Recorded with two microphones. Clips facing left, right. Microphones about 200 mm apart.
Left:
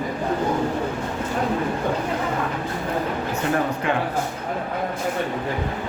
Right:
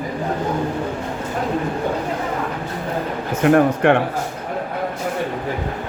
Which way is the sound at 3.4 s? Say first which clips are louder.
Right 10 dB; 65° right (ahead or behind).